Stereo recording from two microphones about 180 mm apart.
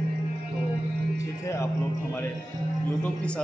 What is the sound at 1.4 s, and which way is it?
Music, 15° left (ahead or behind).